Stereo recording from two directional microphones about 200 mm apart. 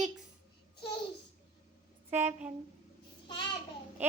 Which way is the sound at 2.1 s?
10° right (ahead or behind).